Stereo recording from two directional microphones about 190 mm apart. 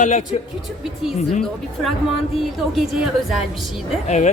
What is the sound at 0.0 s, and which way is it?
Speech, 40° left (ahead or behind).